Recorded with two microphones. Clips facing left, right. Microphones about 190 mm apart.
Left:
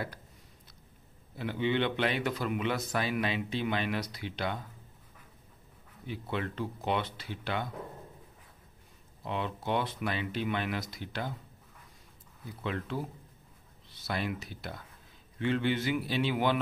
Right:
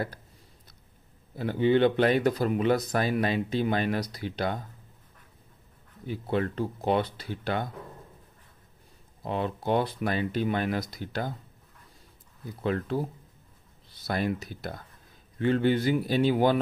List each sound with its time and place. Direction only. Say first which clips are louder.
1.3 s speech: right 7 dB; 40° right (ahead or behind)
6.0 s speech: right 7 dB; 40° right (ahead or behind)
9.2 s speech: right 5 dB; 40° right (ahead or behind)
12.6 s speech: right 7 dB; 40° right (ahead or behind)
14.0 s speech: right 6 dB; 40° right (ahead or behind)